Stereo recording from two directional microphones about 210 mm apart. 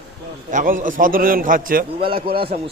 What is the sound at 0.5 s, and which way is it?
Speech, 40° right (ahead or behind).